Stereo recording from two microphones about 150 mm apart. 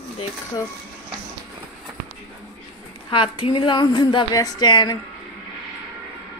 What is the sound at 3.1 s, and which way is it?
A woman's voice, 35° left (ahead or behind).